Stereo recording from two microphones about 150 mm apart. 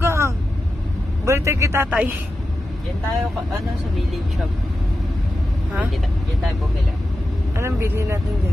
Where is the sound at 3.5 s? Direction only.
Centre (ahead or behind).